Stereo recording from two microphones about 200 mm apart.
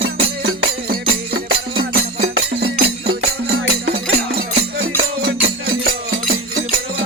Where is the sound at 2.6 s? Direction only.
50° right (ahead or behind).